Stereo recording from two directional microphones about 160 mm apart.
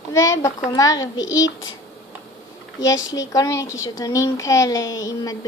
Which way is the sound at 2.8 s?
20° left (ahead or behind).